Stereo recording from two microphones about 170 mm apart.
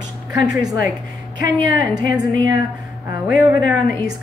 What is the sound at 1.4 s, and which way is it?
Speech, 20° right (ahead or behind).